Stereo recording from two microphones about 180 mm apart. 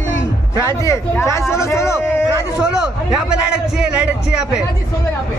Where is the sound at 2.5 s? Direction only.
5° right (ahead or behind).